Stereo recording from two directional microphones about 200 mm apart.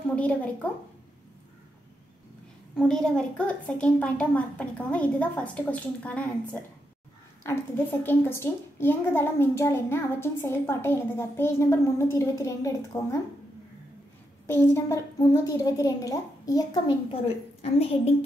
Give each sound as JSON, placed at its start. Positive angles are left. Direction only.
{"t": 0.1, "sound": "a child's voice", "side_deg": 5}
{"t": 2.7, "sound": "a child's voice", "side_deg": 0}
{"t": 8.0, "sound": "a child's voice", "side_deg": 10}
{"t": 14.5, "sound": "a child's voice", "side_deg": 10}